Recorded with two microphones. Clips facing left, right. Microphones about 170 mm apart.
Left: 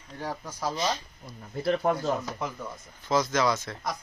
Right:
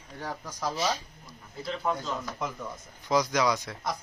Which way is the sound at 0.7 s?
10° right (ahead or behind).